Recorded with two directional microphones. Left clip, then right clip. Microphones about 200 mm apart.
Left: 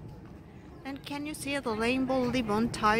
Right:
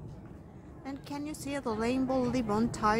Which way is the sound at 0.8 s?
Centre (ahead or behind).